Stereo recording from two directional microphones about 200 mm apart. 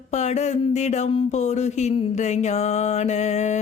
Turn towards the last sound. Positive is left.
turn(degrees=35)  # may be behind; listen again after turning